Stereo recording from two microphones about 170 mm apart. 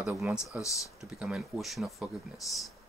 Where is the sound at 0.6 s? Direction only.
20° left (ahead or behind).